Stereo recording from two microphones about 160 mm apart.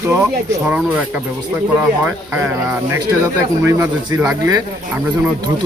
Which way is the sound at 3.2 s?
15° right (ahead or behind).